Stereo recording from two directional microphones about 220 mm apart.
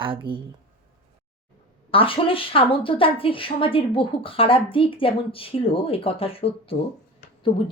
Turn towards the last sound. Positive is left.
turn(degrees=20)  # may be behind; listen again after turning